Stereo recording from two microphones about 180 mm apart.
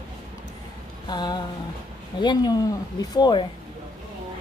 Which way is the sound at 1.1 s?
25° left (ahead or behind).